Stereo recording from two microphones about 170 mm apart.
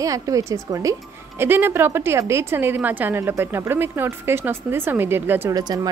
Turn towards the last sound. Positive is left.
turn(degrees=-20)  # may be behind; listen again after turning